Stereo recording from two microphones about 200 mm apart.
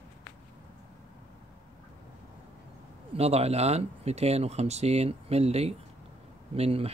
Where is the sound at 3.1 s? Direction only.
30° right (ahead or behind).